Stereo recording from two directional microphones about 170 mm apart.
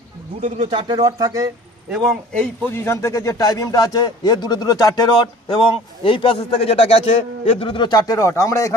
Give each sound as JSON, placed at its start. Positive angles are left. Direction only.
{"t": 0.4, "sound": "speech", "side_deg": -35}
{"t": 1.9, "sound": "a man's voice", "side_deg": 0}
{"t": 2.7, "sound": "speech", "side_deg": 15}